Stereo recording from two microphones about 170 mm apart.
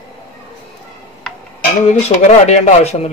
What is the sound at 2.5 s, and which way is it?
Speech, 40° left (ahead or behind).